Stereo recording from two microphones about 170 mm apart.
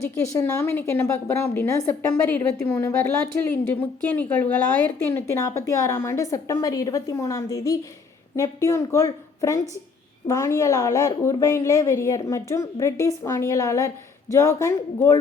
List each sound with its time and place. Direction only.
0.3 s a woman's voice: 15° left (ahead or behind)